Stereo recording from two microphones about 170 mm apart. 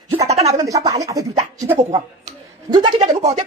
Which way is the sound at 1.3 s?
40° right (ahead or behind).